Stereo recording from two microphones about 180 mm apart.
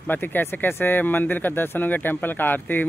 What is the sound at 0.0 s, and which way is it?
Speech, 10° left (ahead or behind).